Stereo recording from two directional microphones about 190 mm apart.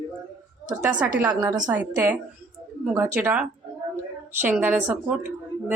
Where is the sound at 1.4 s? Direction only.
20° right (ahead or behind).